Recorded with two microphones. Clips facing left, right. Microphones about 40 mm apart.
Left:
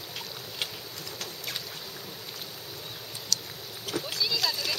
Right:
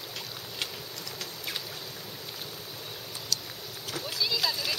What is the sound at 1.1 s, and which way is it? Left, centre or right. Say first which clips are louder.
Boat: even; centre.